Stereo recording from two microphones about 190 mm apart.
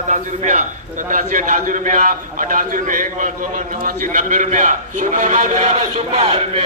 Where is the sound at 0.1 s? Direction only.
40° right (ahead or behind).